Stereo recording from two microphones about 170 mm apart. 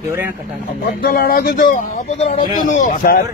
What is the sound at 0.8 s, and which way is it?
Speech, 60° left (ahead or behind).